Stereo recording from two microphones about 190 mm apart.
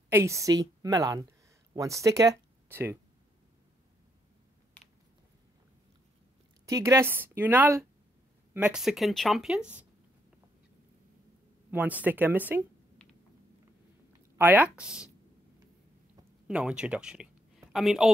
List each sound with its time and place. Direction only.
0.1 s speech: 15° right (ahead or behind)
6.6 s speech: 15° right (ahead or behind)
11.7 s speech: 10° right (ahead or behind)
14.3 s speech: 10° right (ahead or behind)
16.4 s a woman's voice: 5° right (ahead or behind)